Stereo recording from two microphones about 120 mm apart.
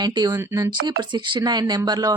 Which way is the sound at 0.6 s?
40° right (ahead or behind).